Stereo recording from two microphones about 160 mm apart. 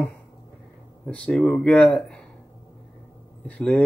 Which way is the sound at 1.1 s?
5° left (ahead or behind).